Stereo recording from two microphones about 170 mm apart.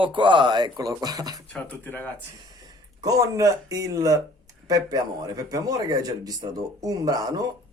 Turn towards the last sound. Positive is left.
turn(degrees=-20)  # may be behind; listen again after turning